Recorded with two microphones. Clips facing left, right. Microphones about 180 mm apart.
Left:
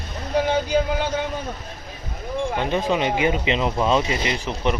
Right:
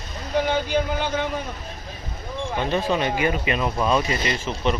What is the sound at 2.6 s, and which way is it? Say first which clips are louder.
Speech: right 1 dB; 15° left (ahead or behind).